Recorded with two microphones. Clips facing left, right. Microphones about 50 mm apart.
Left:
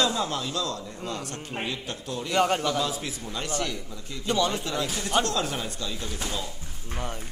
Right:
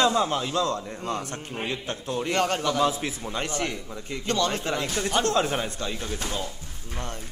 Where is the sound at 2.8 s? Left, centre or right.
Right.